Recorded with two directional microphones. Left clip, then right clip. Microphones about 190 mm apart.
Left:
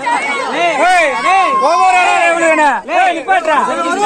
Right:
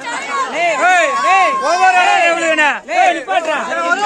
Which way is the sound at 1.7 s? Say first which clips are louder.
Even; 10° right (ahead or behind).